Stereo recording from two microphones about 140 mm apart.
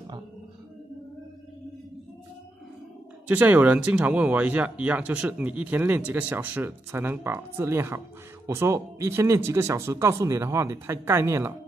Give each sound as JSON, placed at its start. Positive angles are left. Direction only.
{"t": 3.3, "sound": "speech", "side_deg": -10}